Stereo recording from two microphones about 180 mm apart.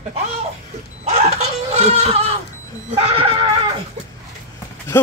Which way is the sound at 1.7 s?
35° right (ahead or behind).